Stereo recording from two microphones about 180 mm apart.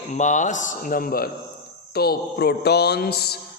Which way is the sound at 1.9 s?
60° left (ahead or behind).